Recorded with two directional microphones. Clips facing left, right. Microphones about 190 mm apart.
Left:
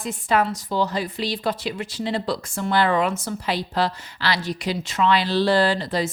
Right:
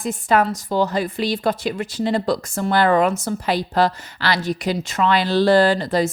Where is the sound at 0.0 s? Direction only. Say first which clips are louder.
Right 3 dB; 45° right (ahead or behind).